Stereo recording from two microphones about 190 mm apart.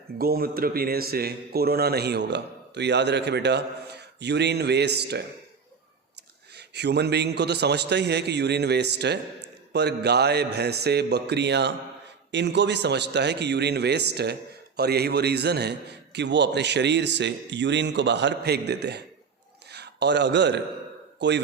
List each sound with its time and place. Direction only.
0.2 s speech: 50° right (ahead or behind)
6.5 s speech: 60° right (ahead or behind)
19.6 s a sound: 60° right (ahead or behind)
21.2 s a man's voice: 65° right (ahead or behind)